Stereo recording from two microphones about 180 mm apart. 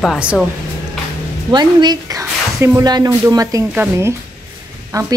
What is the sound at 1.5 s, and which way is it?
A woman's voice, 25° right (ahead or behind).